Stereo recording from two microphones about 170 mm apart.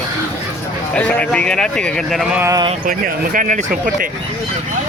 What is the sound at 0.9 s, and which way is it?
Speech, 5° left (ahead or behind).